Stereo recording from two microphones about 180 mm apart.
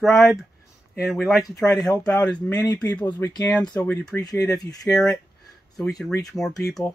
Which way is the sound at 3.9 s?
10° left (ahead or behind).